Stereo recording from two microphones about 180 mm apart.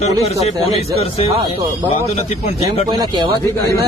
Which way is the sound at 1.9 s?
35° left (ahead or behind).